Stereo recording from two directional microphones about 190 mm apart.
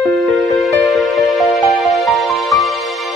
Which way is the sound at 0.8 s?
Centre (ahead or behind).